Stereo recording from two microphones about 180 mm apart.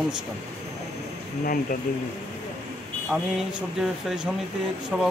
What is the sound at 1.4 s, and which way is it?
Speech, 50° left (ahead or behind).